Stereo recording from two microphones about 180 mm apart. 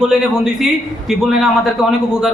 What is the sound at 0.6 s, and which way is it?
Speech, centre (ahead or behind).